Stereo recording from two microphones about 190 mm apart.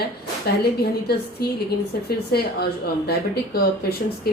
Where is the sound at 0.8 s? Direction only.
55° left (ahead or behind).